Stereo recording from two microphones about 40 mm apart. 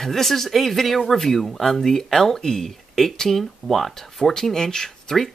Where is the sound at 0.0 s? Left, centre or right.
Centre.